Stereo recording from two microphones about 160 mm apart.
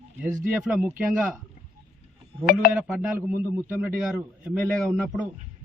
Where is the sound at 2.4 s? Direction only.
65° left (ahead or behind).